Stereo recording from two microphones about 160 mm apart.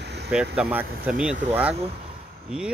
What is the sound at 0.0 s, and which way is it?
Vehicle, 90° right.